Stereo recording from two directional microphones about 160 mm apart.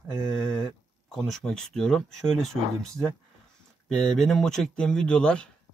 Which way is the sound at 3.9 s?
5° left (ahead or behind).